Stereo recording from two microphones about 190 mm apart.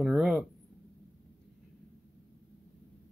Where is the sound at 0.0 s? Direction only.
Centre (ahead or behind).